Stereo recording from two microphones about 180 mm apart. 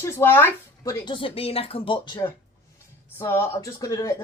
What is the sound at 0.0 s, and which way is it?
Speech, 15° left (ahead or behind).